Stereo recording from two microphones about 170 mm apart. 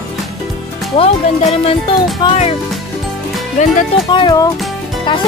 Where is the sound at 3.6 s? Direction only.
45° left (ahead or behind).